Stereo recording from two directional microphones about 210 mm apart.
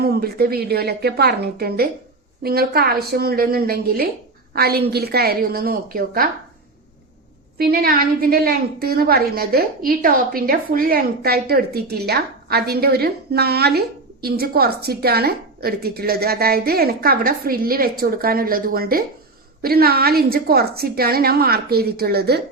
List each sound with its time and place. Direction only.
0.0 s a woman's voice: 45° right (ahead or behind)
7.6 s a woman's voice: 45° right (ahead or behind)